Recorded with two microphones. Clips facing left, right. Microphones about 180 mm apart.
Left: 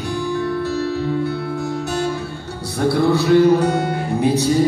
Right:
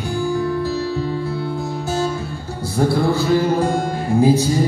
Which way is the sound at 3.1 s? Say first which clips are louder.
Left 4 dB; 70° left (ahead or behind).